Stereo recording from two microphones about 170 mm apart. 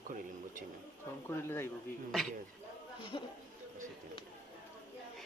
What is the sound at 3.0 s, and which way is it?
Speech, 30° left (ahead or behind).